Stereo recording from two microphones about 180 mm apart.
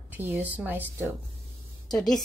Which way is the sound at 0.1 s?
10° right (ahead or behind).